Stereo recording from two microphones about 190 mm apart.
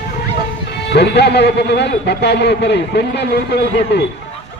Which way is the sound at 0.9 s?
60° left (ahead or behind).